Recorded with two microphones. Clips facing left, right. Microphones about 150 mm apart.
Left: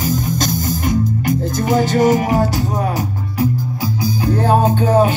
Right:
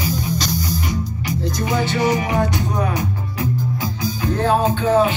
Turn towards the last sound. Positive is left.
turn(degrees=45)  # may be behind; listen again after turning